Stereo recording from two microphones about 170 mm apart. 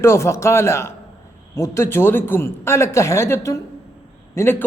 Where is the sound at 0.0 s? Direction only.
15° left (ahead or behind).